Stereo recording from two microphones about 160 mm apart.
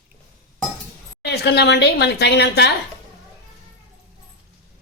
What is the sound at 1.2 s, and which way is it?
Speech, 90° left.